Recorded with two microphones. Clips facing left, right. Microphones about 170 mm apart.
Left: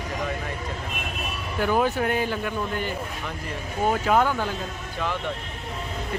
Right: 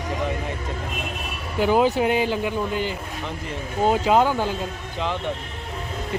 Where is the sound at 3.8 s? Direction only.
20° right (ahead or behind).